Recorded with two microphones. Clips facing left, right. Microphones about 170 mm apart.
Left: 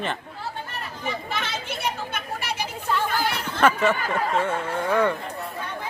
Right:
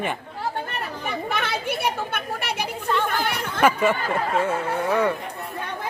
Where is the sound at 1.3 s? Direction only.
60° right (ahead or behind).